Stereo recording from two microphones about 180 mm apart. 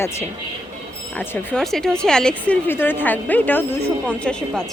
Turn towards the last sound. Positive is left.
turn(degrees=10)  # may be behind; listen again after turning